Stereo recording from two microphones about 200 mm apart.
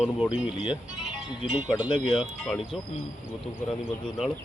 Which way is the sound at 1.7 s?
25° left (ahead or behind).